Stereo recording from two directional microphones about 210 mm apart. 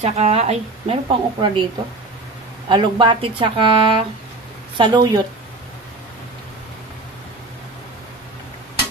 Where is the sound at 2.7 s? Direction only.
25° right (ahead or behind).